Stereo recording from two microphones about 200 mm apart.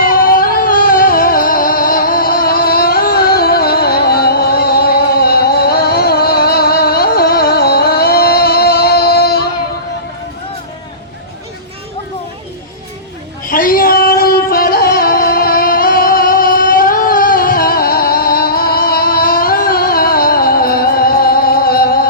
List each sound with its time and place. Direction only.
0.0 s music: 45° left (ahead or behind)
13.4 s music: 45° left (ahead or behind)